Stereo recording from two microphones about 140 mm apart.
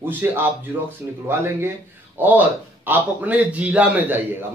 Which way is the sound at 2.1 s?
15° right (ahead or behind).